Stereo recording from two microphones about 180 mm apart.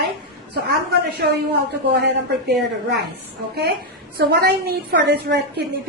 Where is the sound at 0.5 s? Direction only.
65° right (ahead or behind).